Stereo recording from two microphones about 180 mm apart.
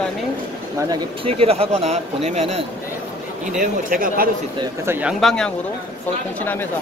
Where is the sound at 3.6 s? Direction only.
50° right (ahead or behind).